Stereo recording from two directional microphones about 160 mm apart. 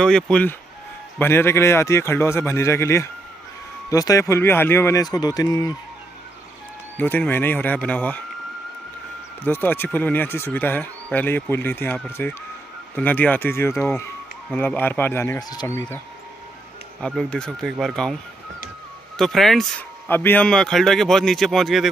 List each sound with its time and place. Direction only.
0.0 s a man's voice: 5° left (ahead or behind); by 5.7 s 25° left (ahead or behind)
7.0 s speech: 10° left (ahead or behind)
9.4 s speech: 10° left (ahead or behind)
17.0 s a man's voice: 5° left (ahead or behind)
19.1 s a man's voice: centre (ahead or behind)
20.1 s a man's voice: 10° left (ahead or behind)